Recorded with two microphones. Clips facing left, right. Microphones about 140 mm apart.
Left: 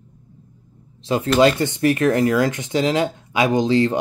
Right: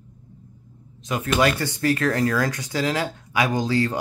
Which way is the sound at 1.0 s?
30° left (ahead or behind).